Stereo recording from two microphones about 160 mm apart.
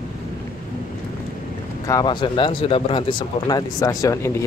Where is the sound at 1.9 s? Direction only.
25° left (ahead or behind).